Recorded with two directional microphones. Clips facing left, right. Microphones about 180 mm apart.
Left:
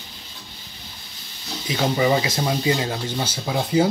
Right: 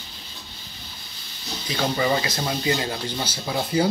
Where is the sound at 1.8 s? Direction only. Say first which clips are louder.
Left 3 dB; 15° left (ahead or behind).